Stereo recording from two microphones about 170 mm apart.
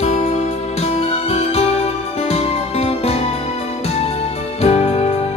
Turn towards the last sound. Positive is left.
turn(degrees=35)  # may be behind; listen again after turning